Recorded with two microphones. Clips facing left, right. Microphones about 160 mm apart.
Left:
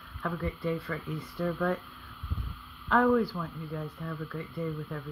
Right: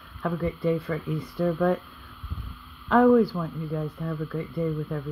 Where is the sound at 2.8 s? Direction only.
20° right (ahead or behind).